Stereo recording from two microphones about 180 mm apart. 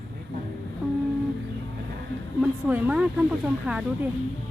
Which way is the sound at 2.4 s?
10° right (ahead or behind).